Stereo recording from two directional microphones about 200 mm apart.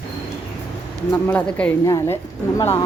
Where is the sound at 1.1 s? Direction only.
5° left (ahead or behind).